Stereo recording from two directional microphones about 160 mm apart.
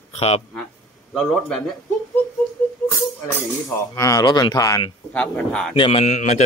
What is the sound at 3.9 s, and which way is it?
Speech, 20° left (ahead or behind).